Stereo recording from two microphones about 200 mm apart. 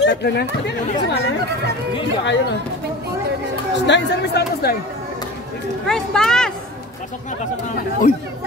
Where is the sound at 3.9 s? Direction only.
55° left (ahead or behind).